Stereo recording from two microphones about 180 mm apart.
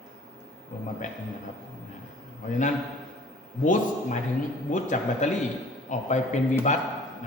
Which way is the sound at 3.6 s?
45° left (ahead or behind).